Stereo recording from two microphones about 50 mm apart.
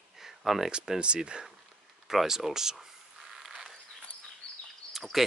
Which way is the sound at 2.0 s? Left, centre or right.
Centre.